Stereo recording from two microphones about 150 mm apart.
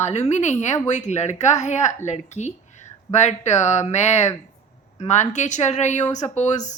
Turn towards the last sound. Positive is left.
turn(degrees=50)  # may be behind; listen again after turning